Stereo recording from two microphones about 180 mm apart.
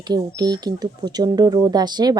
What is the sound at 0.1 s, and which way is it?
Speech, 20° right (ahead or behind).